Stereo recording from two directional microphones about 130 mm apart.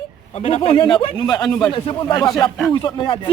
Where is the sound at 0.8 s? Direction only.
40° left (ahead or behind).